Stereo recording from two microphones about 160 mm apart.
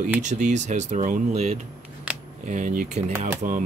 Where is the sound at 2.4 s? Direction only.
50° right (ahead or behind).